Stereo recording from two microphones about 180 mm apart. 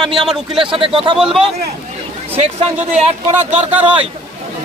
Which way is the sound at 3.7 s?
10° right (ahead or behind).